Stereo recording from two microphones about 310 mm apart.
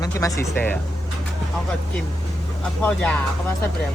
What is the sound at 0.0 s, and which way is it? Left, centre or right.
Speech, centre.